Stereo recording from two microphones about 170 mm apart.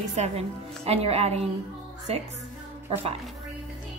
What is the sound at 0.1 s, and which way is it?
Speech, 40° right (ahead or behind).